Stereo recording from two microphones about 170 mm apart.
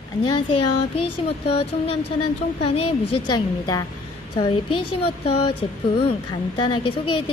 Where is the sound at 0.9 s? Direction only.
35° left (ahead or behind).